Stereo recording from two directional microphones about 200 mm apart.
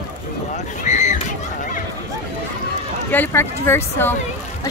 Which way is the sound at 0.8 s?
35° left (ahead or behind).